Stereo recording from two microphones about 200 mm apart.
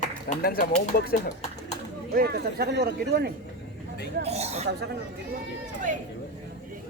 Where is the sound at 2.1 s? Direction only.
50° right (ahead or behind).